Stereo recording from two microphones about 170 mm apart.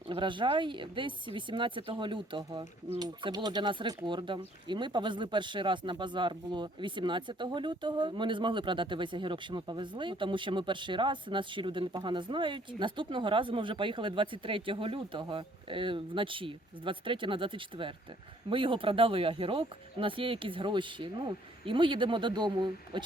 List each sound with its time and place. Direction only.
0.1 s speech: 30° right (ahead or behind)